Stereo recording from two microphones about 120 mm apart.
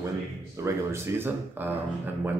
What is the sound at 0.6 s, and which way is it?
Speech, 20° right (ahead or behind).